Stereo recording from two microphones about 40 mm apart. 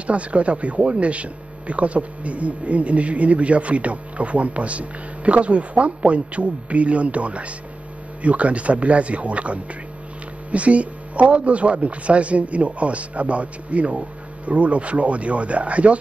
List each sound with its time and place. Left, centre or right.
0.0 s speech: right